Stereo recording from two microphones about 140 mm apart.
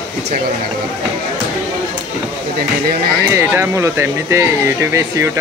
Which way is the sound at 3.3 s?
15° right (ahead or behind).